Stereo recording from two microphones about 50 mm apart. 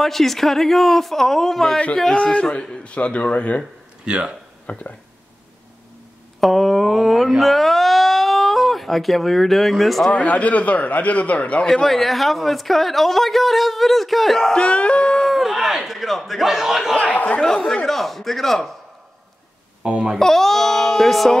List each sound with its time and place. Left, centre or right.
0.0 s speech: centre
2.1 s a man's voice: centre
4.0 s speech: centre
4.7 s a man's voice: left
6.4 s speech: centre
10.1 s a man's voice: left
11.6 s speech: centre
14.5 s a man's voice: left
15.2 s speech: centre
17.1 s speech: left
17.8 s speech: centre
19.8 s speech: centre
20.2 s speech: centre